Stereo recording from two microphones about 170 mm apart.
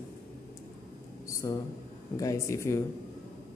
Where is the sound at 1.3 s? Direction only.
20° left (ahead or behind).